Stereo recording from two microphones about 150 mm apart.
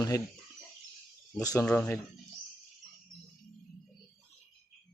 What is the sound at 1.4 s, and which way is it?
Speech, 25° left (ahead or behind).